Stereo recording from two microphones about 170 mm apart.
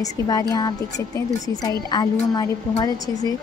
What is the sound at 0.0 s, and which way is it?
Speech, 20° left (ahead or behind).